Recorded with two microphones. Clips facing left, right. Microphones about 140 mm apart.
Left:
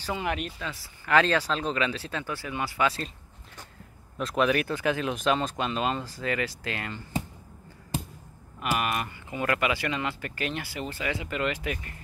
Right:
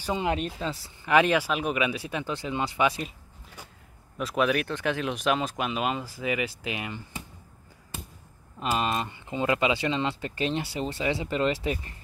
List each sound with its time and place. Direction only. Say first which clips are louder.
0.0 s speech: right 3 dB; 20° right (ahead or behind)
1.0 s speech: right 1 dB; 15° right (ahead or behind)
4.2 s speech: even; centre (ahead or behind)
8.5 s speech: right 1 dB; 25° right (ahead or behind)